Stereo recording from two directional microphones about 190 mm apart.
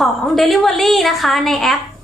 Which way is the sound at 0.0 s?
Centre (ahead or behind).